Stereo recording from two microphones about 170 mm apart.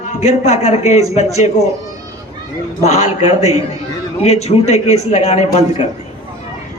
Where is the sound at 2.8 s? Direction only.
40° left (ahead or behind).